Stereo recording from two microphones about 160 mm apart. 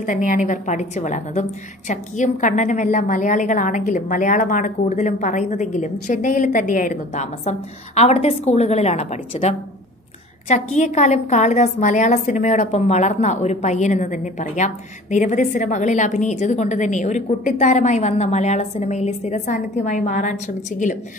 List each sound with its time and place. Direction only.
0.0 s a woman's voice: 55° left (ahead or behind)